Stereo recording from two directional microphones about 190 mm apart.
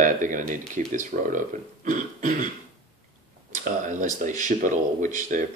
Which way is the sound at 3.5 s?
40° right (ahead or behind).